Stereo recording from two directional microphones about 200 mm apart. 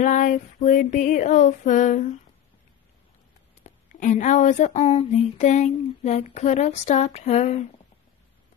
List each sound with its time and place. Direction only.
0.0 s speech: 40° left (ahead or behind)
3.6 s speech: 40° left (ahead or behind)